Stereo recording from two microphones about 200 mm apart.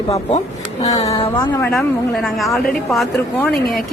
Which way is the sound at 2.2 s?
Centre (ahead or behind).